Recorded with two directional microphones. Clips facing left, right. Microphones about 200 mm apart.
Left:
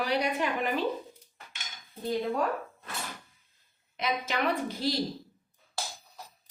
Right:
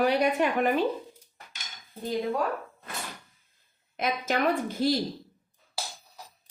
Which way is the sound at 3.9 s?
50° right (ahead or behind).